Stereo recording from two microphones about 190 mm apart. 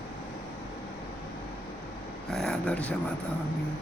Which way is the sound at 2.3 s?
Centre (ahead or behind).